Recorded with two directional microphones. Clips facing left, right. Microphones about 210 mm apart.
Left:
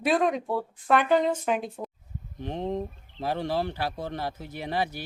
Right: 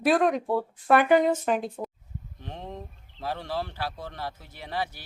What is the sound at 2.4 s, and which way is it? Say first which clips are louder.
Speech: left 9 dB; 20° left (ahead or behind).